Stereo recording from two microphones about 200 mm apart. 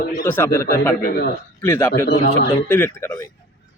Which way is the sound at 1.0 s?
50° left (ahead or behind).